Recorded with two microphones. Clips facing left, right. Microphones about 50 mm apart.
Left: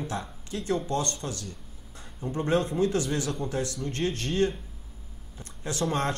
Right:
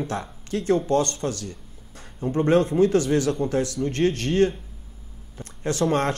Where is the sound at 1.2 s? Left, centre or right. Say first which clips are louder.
Right 7 dB; right.